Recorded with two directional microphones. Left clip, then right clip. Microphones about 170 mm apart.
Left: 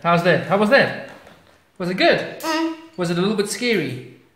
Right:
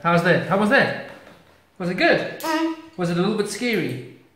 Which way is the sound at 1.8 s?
55° left (ahead or behind).